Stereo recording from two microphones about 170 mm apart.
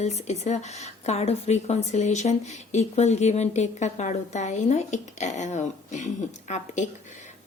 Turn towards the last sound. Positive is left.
turn(degrees=45)  # may be behind; listen again after turning